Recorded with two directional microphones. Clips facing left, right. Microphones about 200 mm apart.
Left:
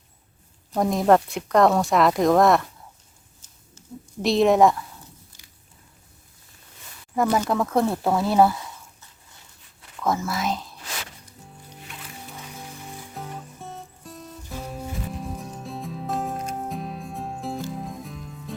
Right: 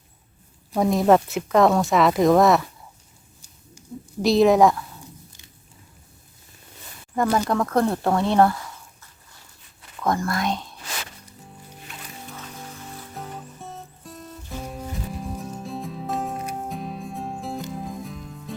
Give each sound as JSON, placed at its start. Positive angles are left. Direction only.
{"t": 0.7, "sound": "speech", "side_deg": 0}
{"t": 3.8, "sound": "a sound", "side_deg": -10}
{"t": 4.2, "sound": "speech", "side_deg": 0}
{"t": 7.2, "sound": "speech", "side_deg": 5}
{"t": 8.5, "sound": "a sound", "side_deg": 20}
{"t": 10.0, "sound": "speech", "side_deg": 5}
{"t": 12.3, "sound": "music", "side_deg": 10}
{"t": 13.1, "sound": "music", "side_deg": 0}